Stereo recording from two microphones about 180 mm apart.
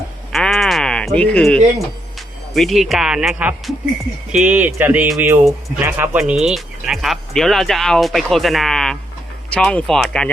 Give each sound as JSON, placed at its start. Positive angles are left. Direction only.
{"t": 0.3, "sound": "sheep", "side_deg": 5}
{"t": 2.1, "sound": "speech", "side_deg": 0}